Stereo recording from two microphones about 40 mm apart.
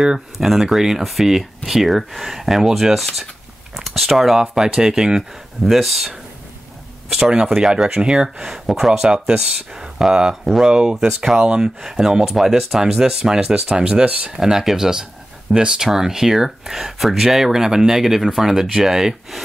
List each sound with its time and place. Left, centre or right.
0.0 s speech: centre
5.6 s speech: centre
7.5 s speech: centre
8.5 s speech: centre
10.4 s speech: centre
10.7 s speech: centre
14.4 s speech: centre